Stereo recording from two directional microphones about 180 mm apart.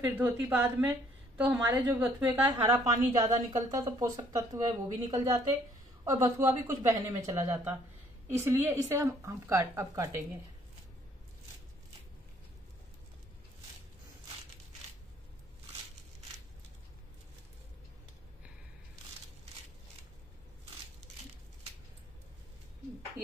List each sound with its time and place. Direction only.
0.0 s a woman's voice: 10° right (ahead or behind)